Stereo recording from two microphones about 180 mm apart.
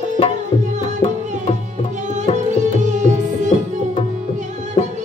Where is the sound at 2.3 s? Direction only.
40° right (ahead or behind).